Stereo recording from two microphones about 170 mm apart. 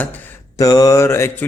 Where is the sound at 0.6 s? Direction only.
20° left (ahead or behind).